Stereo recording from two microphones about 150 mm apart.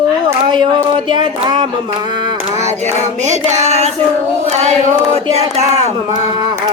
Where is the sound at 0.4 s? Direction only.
30° right (ahead or behind).